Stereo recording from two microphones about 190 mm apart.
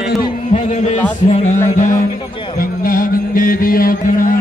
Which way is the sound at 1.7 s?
40° left (ahead or behind).